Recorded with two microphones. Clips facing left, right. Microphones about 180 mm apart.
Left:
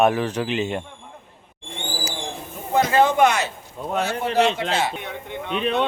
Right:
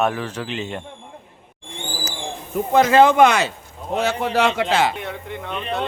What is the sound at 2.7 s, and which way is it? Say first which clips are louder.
A man's voice: right 4 dB; 90° right.